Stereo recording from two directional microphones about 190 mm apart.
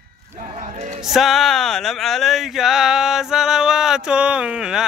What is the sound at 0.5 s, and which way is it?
Music, 40° right (ahead or behind).